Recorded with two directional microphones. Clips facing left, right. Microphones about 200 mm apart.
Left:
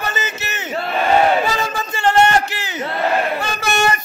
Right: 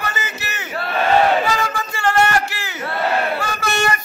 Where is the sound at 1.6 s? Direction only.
20° left (ahead or behind).